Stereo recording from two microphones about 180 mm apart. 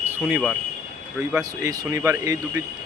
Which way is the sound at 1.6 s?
20° right (ahead or behind).